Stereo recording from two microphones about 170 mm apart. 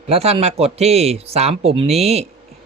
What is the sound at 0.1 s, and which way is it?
Speech, 35° right (ahead or behind).